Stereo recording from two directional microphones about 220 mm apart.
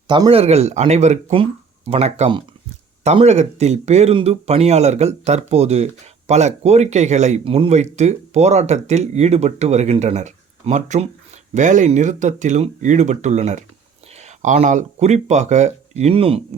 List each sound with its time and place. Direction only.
0.1 s speech: 25° right (ahead or behind)